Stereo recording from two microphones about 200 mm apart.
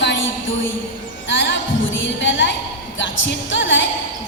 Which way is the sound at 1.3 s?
65° left (ahead or behind).